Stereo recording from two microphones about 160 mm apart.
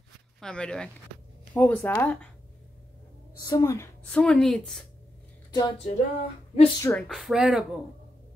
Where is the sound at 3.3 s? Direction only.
20° left (ahead or behind).